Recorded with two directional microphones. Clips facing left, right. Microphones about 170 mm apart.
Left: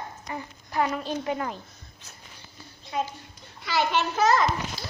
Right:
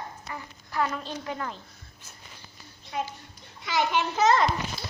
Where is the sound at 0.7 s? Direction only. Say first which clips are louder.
Left 3 dB; 15° left (ahead or behind).